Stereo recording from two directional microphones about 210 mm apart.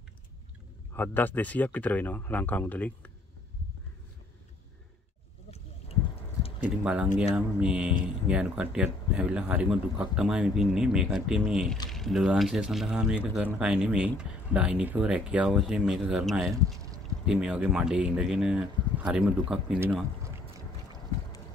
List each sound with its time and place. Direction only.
0.9 s speech: 10° left (ahead or behind)
6.8 s speech: 5° right (ahead or behind)